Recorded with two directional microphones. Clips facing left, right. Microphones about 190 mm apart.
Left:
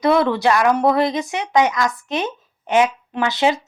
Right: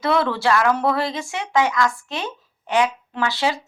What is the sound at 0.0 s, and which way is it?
A woman's voice, 15° left (ahead or behind).